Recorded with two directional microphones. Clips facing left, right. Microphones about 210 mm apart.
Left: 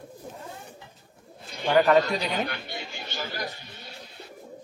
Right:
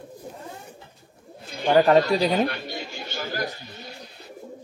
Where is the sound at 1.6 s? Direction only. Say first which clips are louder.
Right 3 dB; 35° right (ahead or behind).